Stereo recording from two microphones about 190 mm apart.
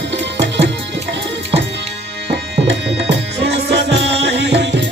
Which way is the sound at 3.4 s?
60° right (ahead or behind).